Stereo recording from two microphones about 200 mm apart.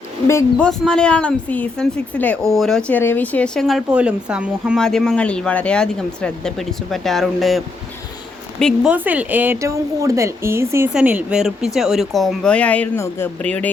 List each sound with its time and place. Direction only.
0.3 s speech: 15° left (ahead or behind)